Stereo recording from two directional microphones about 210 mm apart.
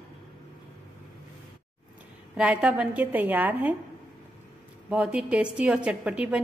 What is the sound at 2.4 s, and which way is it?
A woman's voice, 5° right (ahead or behind).